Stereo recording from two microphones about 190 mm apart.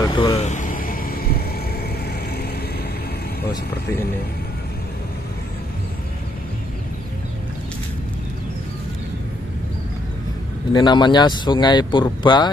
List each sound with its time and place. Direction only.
0.0 s vehicle: 20° left (ahead or behind)
0.4 s vehicle: 40° left (ahead or behind)
10.7 s speech: 25° left (ahead or behind)